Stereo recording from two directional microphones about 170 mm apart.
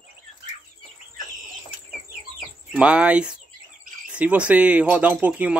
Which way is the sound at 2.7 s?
5° right (ahead or behind).